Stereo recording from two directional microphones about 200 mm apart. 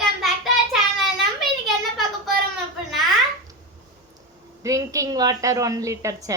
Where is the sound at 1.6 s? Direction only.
Centre (ahead or behind).